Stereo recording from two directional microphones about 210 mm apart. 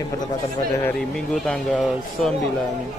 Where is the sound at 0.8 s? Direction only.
5° left (ahead or behind).